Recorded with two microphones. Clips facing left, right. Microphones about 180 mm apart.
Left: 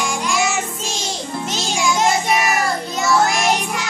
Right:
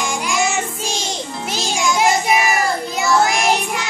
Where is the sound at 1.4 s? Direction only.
10° right (ahead or behind).